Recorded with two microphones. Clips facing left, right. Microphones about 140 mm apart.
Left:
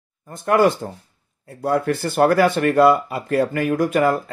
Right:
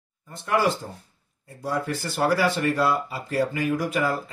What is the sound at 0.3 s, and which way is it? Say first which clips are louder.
Speech: left 7 dB; 50° left (ahead or behind).